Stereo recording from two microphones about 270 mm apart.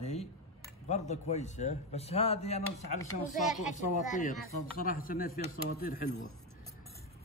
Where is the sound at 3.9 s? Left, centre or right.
Left.